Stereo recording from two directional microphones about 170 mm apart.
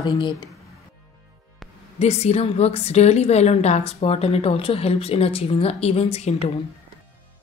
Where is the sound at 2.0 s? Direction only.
40° left (ahead or behind).